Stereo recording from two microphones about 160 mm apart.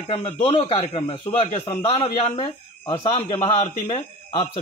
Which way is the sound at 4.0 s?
30° left (ahead or behind).